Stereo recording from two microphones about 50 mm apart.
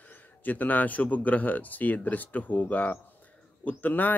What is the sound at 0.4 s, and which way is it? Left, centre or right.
Speech, left.